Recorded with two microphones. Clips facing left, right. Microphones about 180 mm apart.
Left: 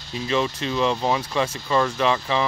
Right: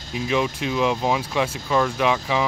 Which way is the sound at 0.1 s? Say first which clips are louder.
Right 1 dB; 5° right (ahead or behind).